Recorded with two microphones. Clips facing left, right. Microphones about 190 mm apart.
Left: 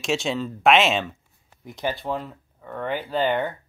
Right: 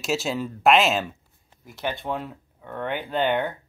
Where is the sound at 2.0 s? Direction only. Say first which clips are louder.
Left 1 dB; centre (ahead or behind).